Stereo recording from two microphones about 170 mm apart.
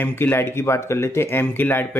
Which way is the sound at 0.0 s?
10° left (ahead or behind).